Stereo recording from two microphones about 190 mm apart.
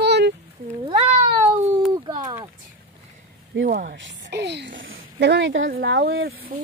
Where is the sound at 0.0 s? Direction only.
60° right (ahead or behind).